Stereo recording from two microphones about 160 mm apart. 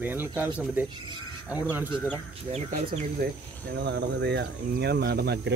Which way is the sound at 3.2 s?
70° right (ahead or behind).